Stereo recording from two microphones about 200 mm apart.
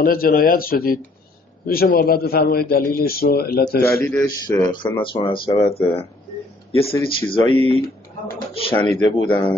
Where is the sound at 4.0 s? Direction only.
5° left (ahead or behind).